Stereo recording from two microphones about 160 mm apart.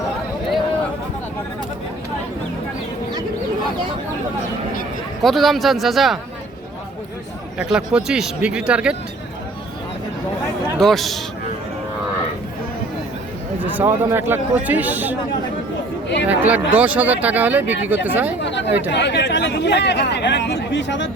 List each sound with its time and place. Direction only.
5.2 s speech: centre (ahead or behind)
7.6 s speech: 5° right (ahead or behind)
10.8 s speech: centre (ahead or behind)
13.6 s speech: 15° right (ahead or behind)
16.2 s speech: 10° right (ahead or behind)
18.4 s speech: 90° left